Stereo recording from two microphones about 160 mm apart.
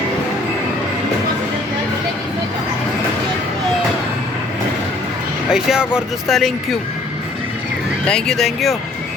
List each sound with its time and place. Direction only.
5.5 s speech: 5° right (ahead or behind)
8.0 s speech: 5° left (ahead or behind)